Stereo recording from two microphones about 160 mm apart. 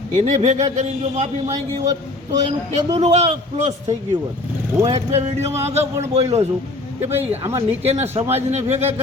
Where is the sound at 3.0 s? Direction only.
45° right (ahead or behind).